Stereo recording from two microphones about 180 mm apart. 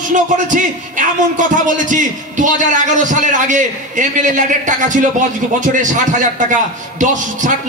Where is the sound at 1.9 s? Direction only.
45° right (ahead or behind).